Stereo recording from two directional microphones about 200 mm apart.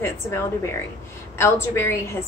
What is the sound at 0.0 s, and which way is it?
A woman's voice, 15° left (ahead or behind).